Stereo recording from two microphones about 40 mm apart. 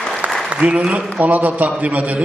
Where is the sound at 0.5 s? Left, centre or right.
Right.